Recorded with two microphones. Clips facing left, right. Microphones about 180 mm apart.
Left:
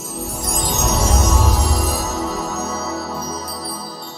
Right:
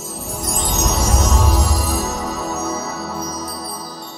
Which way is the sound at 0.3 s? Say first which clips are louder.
Right 1 dB; centre (ahead or behind).